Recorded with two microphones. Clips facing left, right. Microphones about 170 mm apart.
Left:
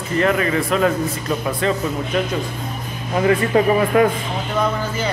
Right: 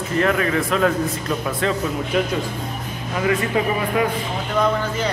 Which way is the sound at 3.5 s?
40° left (ahead or behind).